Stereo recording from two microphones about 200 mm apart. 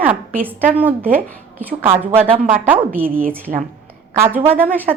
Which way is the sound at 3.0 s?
45° right (ahead or behind).